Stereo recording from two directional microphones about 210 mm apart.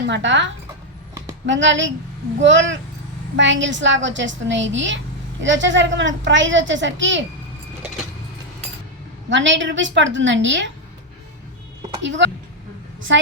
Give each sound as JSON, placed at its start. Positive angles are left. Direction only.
{"t": 0.1, "sound": "a child's voice", "side_deg": -60}
{"t": 9.3, "sound": "a child's voice", "side_deg": -60}
{"t": 12.0, "sound": "a child's voice", "side_deg": -60}